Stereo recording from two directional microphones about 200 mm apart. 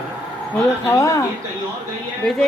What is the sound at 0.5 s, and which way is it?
Speech, 15° left (ahead or behind).